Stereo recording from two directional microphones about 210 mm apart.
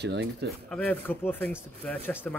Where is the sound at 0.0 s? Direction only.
55° right (ahead or behind).